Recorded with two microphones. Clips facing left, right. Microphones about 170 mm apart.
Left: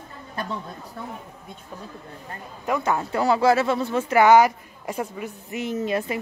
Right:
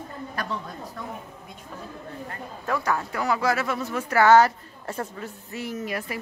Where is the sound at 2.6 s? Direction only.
20° left (ahead or behind).